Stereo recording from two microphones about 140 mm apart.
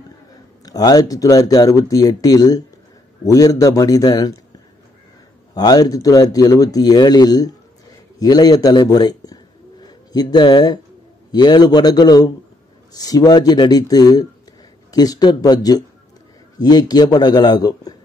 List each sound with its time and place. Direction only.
0.7 s a man's voice: 25° left (ahead or behind)
5.5 s a man's voice: 30° left (ahead or behind)